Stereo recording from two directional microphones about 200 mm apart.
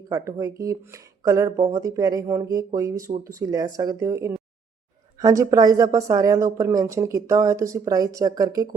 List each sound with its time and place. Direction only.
0.1 s speech: 15° right (ahead or behind)